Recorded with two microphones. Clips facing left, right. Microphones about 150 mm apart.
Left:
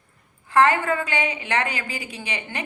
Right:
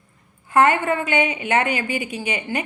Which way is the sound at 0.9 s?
20° right (ahead or behind).